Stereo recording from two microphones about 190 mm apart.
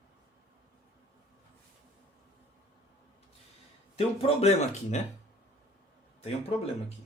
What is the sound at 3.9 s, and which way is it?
Speech, 35° left (ahead or behind).